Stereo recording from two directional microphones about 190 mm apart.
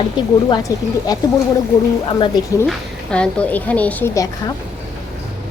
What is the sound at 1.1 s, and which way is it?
Speech, 20° left (ahead or behind).